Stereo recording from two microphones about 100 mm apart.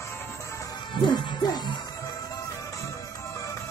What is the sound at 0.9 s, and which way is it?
Music, 50° left (ahead or behind).